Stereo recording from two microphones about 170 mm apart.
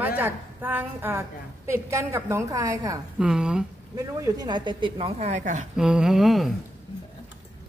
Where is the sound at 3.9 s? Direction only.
20° right (ahead or behind); by 5.6 s 45° right (ahead or behind).